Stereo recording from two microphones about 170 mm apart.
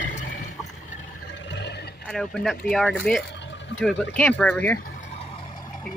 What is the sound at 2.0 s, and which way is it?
Speech, 5° left (ahead or behind).